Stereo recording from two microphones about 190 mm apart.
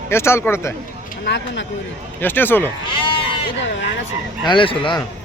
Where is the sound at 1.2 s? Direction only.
70° left (ahead or behind).